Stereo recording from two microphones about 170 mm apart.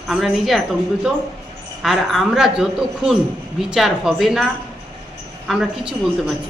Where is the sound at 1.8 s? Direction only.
Centre (ahead or behind).